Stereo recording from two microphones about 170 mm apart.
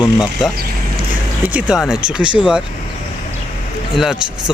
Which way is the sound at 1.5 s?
5° right (ahead or behind).